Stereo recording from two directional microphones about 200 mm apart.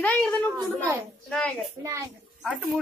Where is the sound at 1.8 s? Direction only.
15° right (ahead or behind).